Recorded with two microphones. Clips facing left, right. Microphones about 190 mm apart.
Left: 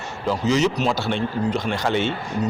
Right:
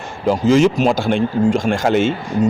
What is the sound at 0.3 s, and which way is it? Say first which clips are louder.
Speech: right 7 dB; 50° right (ahead or behind).